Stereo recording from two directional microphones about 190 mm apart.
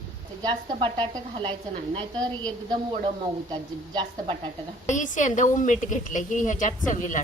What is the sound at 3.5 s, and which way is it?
Speech, 25° right (ahead or behind).